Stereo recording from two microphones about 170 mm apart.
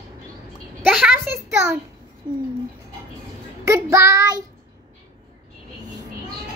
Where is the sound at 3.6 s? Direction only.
15° right (ahead or behind).